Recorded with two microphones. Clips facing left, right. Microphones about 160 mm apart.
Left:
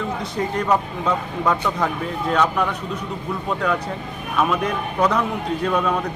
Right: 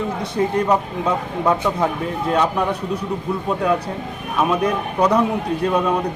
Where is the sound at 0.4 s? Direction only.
20° right (ahead or behind).